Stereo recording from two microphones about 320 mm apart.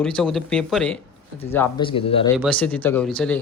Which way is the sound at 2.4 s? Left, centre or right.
Centre.